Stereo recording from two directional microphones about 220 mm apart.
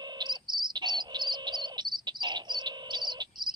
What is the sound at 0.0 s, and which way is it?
Bird, 20° right (ahead or behind).